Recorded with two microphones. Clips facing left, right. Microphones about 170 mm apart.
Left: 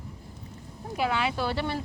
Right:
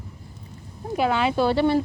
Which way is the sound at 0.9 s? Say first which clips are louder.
Right 6 dB; 25° right (ahead or behind).